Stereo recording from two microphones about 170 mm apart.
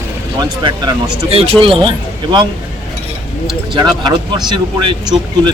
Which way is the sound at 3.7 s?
25° right (ahead or behind).